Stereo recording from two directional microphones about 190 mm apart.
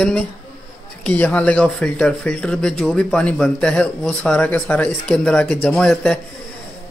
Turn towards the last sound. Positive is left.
turn(degrees=0)  # may be behind; listen again after turning